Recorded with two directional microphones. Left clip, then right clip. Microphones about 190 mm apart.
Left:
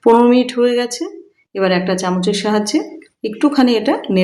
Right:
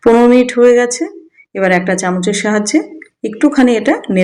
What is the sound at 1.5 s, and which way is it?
A woman's voice, 10° right (ahead or behind).